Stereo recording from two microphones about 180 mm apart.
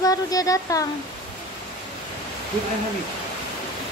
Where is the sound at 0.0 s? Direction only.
20° left (ahead or behind).